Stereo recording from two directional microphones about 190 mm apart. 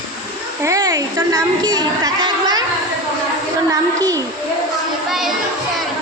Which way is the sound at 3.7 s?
15° right (ahead or behind).